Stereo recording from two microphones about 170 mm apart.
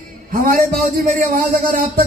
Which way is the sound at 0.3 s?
60° right (ahead or behind).